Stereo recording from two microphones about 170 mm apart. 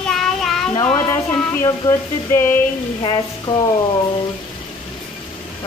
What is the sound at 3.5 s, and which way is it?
Speech, 30° left (ahead or behind).